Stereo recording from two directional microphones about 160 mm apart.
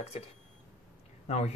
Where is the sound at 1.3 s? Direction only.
40° left (ahead or behind).